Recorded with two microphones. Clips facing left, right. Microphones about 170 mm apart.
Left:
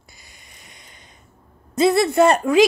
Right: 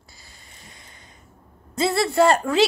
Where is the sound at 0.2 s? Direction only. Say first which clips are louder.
Right 2 dB; 15° left (ahead or behind).